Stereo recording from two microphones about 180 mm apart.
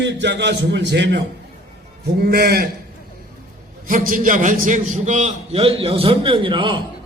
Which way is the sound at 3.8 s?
50° right (ahead or behind).